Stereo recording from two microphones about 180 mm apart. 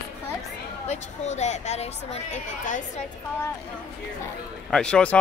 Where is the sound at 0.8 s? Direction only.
40° left (ahead or behind).